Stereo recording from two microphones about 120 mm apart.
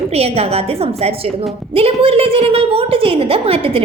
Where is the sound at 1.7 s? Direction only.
55° right (ahead or behind).